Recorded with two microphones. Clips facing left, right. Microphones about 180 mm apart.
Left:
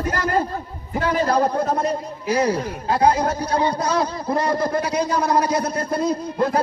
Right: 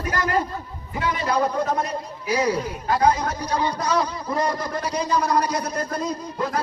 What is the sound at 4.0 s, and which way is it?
Speech, 50° left (ahead or behind).